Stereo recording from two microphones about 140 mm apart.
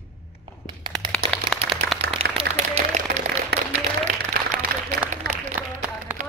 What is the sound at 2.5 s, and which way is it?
Speech, 50° right (ahead or behind).